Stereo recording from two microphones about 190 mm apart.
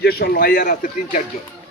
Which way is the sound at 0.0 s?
50° left (ahead or behind).